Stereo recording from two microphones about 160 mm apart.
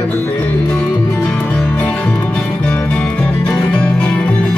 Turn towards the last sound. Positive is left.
turn(degrees=10)  # may be behind; listen again after turning